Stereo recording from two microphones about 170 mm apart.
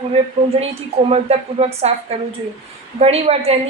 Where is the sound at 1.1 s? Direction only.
40° right (ahead or behind).